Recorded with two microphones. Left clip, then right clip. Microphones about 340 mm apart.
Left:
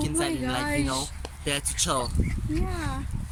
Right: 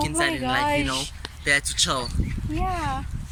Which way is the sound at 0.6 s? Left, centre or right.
Centre.